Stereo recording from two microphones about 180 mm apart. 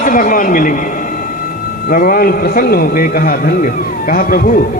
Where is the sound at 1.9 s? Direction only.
55° left (ahead or behind).